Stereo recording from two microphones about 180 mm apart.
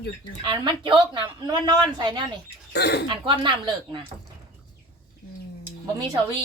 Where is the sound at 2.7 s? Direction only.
65° left (ahead or behind).